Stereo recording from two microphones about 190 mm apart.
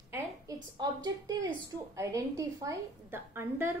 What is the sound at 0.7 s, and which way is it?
A woman's voice, 20° right (ahead or behind).